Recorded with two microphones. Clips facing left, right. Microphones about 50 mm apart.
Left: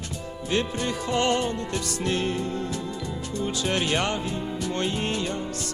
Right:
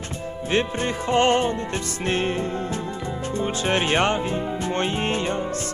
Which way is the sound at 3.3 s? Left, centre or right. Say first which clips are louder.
Right 4 dB; right.